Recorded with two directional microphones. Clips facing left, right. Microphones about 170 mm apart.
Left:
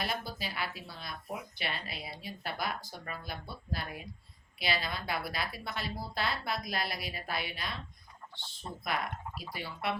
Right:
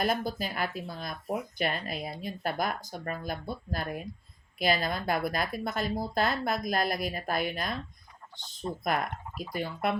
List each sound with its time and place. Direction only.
0.0 s speech: 50° right (ahead or behind)